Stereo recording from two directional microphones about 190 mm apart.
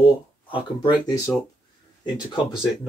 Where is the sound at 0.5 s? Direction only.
25° left (ahead or behind).